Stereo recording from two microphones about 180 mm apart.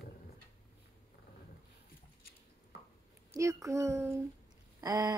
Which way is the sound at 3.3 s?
15° right (ahead or behind).